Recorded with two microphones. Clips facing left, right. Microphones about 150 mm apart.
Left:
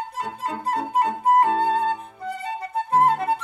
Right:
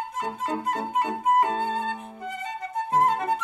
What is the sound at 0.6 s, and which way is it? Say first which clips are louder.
Music: left 7 dB; 35° left (ahead or behind).